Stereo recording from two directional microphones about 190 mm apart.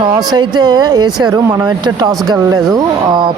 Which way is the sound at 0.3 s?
20° right (ahead or behind).